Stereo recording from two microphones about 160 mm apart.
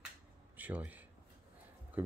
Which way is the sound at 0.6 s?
10° right (ahead or behind).